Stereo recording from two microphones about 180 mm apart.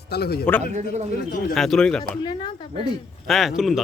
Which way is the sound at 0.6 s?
40° right (ahead or behind).